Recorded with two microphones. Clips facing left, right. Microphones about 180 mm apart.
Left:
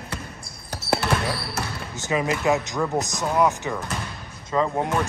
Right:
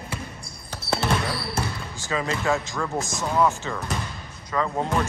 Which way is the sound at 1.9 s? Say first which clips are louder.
Left 4 dB; 20° left (ahead or behind).